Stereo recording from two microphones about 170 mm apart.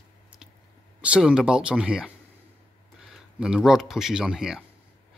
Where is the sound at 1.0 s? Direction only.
5° right (ahead or behind).